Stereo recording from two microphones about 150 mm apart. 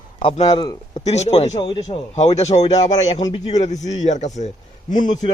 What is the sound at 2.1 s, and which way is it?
A man's voice, 50° left (ahead or behind).